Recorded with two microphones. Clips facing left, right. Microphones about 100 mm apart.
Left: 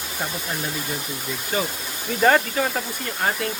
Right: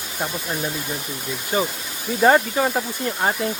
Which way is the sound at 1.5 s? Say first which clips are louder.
Right 3 dB; 20° right (ahead or behind).